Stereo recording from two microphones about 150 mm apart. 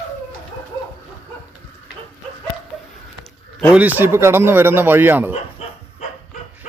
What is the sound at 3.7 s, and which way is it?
Speech, 10° right (ahead or behind).